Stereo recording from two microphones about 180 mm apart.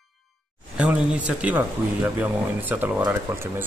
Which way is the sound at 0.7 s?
5° right (ahead or behind).